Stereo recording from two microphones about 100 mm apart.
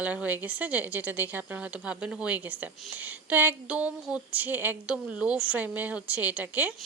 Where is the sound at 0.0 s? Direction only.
15° right (ahead or behind).